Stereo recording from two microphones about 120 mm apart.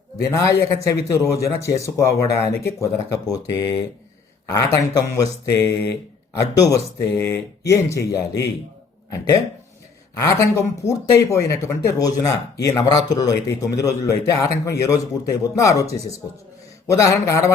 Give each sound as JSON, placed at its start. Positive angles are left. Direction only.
{"t": 0.2, "sound": "speech", "side_deg": 25}
{"t": 6.3, "sound": "speech", "side_deg": 30}
{"t": 10.2, "sound": "speech", "side_deg": 25}